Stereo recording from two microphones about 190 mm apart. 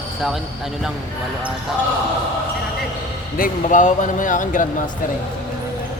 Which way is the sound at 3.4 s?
40° left (ahead or behind).